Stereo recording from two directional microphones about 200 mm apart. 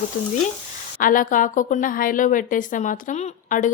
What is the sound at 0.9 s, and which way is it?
A woman's voice, 45° left (ahead or behind).